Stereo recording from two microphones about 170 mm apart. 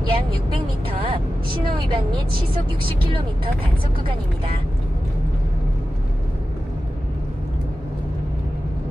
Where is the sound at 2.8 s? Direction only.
30° right (ahead or behind).